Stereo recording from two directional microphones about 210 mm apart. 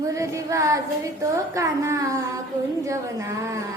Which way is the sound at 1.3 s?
15° right (ahead or behind).